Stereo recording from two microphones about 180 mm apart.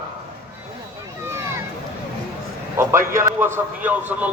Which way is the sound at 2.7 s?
15° right (ahead or behind).